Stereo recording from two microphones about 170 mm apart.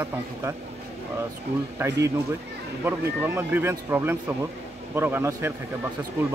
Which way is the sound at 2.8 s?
10° right (ahead or behind).